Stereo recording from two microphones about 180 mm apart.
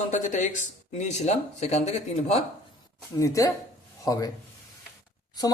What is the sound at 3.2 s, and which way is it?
Speech, 20° left (ahead or behind).